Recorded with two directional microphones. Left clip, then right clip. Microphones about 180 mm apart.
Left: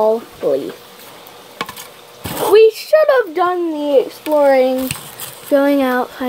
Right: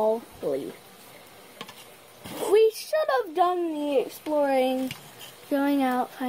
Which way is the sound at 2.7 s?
15° right (ahead or behind).